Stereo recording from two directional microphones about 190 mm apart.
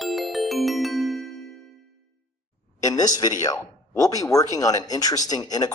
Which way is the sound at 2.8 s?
20° left (ahead or behind).